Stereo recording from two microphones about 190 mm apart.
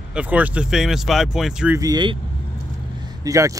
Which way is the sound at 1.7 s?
20° right (ahead or behind).